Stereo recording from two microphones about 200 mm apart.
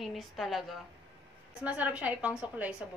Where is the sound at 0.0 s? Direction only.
Centre (ahead or behind).